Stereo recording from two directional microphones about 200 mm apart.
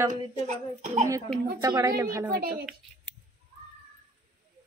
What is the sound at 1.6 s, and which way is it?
Speech, 15° right (ahead or behind).